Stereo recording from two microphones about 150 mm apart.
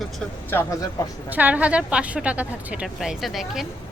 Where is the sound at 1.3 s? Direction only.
10° right (ahead or behind).